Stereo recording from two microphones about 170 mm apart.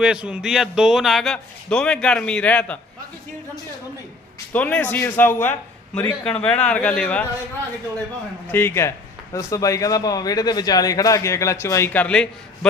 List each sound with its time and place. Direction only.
0.0 s a man's voice: 5° right (ahead or behind)
4.5 s a man's voice: 10° left (ahead or behind)
8.4 s a man's voice: 10° left (ahead or behind)